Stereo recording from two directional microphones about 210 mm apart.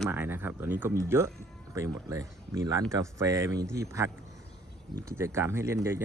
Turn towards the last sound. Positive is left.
turn(degrees=-10)  # may be behind; listen again after turning